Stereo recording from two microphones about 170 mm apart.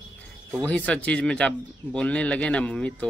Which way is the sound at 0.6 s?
5° left (ahead or behind).